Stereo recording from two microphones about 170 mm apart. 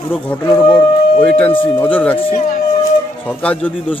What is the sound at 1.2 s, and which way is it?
Speech, 10° left (ahead or behind).